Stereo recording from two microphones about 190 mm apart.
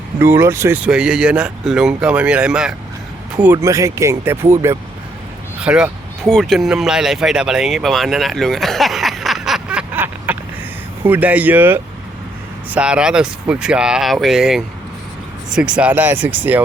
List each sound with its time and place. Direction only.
0.2 s speech: 15° right (ahead or behind)